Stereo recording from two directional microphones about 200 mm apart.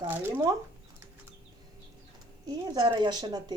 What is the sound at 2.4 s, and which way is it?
Speech, 20° right (ahead or behind).